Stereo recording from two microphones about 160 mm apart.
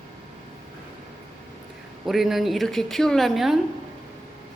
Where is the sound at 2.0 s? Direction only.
Centre (ahead or behind).